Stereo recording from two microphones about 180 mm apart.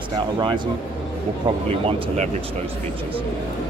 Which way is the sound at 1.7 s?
35° right (ahead or behind).